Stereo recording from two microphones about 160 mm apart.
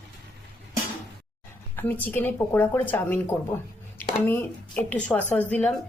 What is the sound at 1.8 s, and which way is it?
A woman's voice, 10° left (ahead or behind).